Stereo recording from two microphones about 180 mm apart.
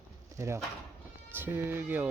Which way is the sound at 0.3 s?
15° right (ahead or behind).